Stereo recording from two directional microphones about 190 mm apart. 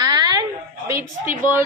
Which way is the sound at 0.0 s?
20° right (ahead or behind).